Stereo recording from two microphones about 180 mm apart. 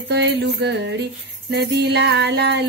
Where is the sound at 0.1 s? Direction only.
70° right (ahead or behind).